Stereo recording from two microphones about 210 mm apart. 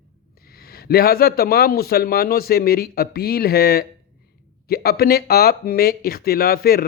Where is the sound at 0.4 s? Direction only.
45° left (ahead or behind).